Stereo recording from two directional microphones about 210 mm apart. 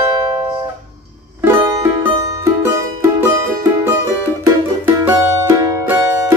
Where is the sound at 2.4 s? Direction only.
15° right (ahead or behind).